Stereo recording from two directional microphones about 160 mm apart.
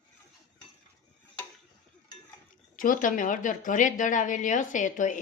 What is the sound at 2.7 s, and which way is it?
A woman's voice, 60° left (ahead or behind).